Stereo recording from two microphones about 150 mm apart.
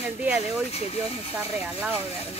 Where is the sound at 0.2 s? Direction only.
10° right (ahead or behind).